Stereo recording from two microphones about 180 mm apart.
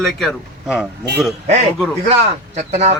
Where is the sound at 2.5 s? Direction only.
40° right (ahead or behind).